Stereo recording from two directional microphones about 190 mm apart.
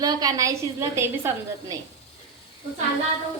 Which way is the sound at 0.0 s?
20° right (ahead or behind).